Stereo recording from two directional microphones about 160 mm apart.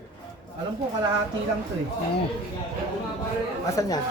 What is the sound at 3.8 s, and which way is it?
Speech, 25° left (ahead or behind).